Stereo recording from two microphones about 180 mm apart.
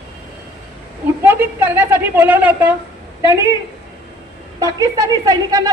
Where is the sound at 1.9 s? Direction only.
10° right (ahead or behind).